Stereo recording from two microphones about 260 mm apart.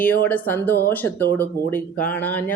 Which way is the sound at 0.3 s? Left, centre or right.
Centre.